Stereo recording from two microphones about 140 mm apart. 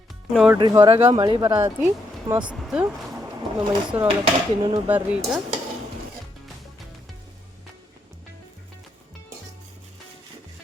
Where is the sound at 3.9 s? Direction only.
10° right (ahead or behind).